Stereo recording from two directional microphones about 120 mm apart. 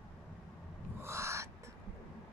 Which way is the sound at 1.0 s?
25° right (ahead or behind).